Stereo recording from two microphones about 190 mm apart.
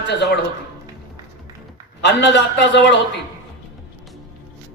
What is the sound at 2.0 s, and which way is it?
Speech, 65° left (ahead or behind).